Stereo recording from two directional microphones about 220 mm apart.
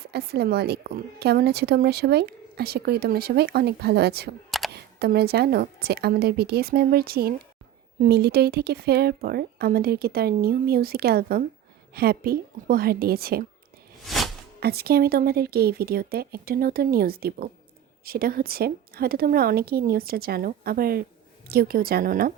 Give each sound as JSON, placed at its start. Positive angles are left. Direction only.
{"t": 0.0, "sound": "a woman's voice", "side_deg": -45}
{"t": 14.1, "sound": "a sound", "side_deg": 0}
{"t": 14.6, "sound": "a woman's voice", "side_deg": -45}